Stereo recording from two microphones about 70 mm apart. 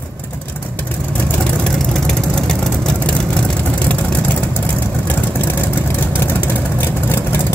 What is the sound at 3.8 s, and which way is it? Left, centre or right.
Vehicle, left.